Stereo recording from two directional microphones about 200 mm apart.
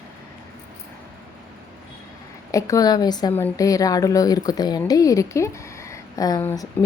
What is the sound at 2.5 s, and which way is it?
A woman's voice, 15° left (ahead or behind).